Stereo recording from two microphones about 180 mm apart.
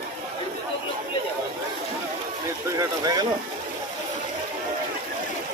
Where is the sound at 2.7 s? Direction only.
20° right (ahead or behind).